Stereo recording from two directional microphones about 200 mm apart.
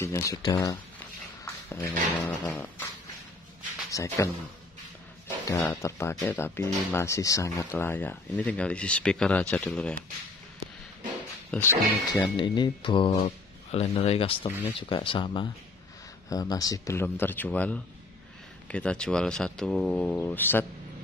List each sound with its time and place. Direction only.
0.0 s speech: 15° left (ahead or behind)
1.4 s dog: 10° left (ahead or behind)
3.9 s speech: 15° left (ahead or behind)
5.4 s speech: 15° left (ahead or behind)
11.5 s speech: 10° left (ahead or behind)
12.4 s mantra: 25° left (ahead or behind)
16.3 s speech: 15° left (ahead or behind)